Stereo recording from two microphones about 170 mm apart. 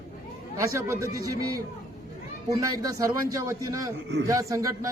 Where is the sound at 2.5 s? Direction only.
20° right (ahead or behind).